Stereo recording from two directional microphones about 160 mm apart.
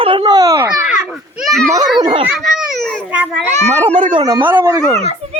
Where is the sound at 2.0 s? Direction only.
30° right (ahead or behind).